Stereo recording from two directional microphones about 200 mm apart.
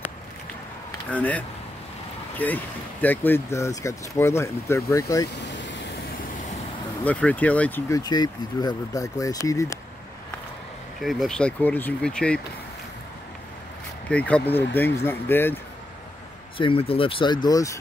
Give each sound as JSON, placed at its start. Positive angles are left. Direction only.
{"t": 1.1, "sound": "speech", "side_deg": 10}
{"t": 5.4, "sound": "vehicle", "side_deg": 65}
{"t": 7.1, "sound": "speech", "side_deg": 5}
{"t": 8.0, "sound": "speech", "side_deg": 20}
{"t": 11.0, "sound": "speech", "side_deg": 0}
{"t": 14.0, "sound": "speech", "side_deg": 5}
{"t": 16.5, "sound": "speech", "side_deg": 25}